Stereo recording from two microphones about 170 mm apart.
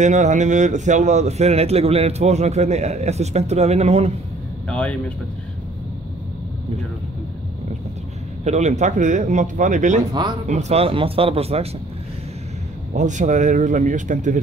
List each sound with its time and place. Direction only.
0.0 s speech: 45° right (ahead or behind)
4.6 s speech: 5° left (ahead or behind)
8.5 s speech: 40° right (ahead or behind)
12.9 s speech: 45° right (ahead or behind)